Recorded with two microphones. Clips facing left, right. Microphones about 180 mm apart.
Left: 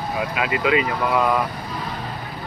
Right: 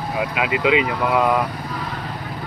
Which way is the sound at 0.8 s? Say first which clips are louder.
Right 1 dB; 15° right (ahead or behind).